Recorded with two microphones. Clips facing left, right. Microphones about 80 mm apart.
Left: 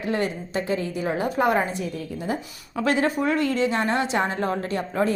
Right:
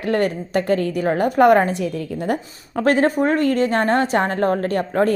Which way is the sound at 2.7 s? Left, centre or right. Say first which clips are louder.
Right 5 dB; right.